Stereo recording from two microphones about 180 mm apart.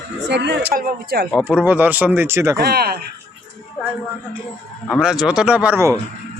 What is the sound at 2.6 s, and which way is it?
Speech, 60° right (ahead or behind).